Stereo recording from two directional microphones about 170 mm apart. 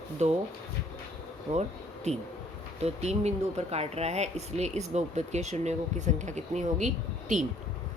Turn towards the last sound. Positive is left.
turn(degrees=-45)  # may be behind; listen again after turning